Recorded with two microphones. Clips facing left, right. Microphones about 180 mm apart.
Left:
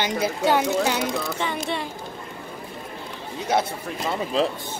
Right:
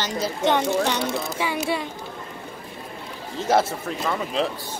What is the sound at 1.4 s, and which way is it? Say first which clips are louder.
Speech: right 2 dB; 5° right (ahead or behind).